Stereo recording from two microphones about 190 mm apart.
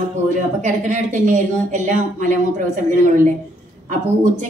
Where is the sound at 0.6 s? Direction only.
40° right (ahead or behind).